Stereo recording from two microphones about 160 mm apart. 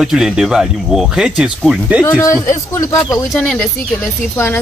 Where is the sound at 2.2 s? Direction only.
20° left (ahead or behind).